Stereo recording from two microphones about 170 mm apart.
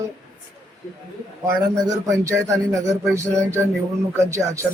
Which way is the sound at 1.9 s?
15° right (ahead or behind).